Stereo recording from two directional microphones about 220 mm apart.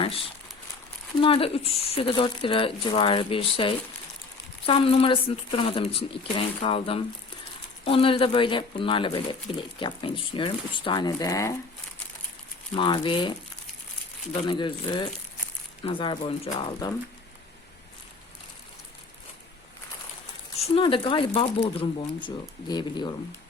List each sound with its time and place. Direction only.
0.0 s speech: 25° left (ahead or behind)
12.7 s speech: 20° left (ahead or behind)
14.4 s speech: 20° left (ahead or behind)
20.6 s speech: 25° left (ahead or behind)